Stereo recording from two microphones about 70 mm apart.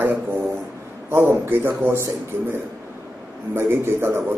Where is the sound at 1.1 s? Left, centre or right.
Right.